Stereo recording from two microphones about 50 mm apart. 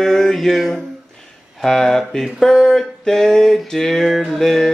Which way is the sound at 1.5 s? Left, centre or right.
Centre.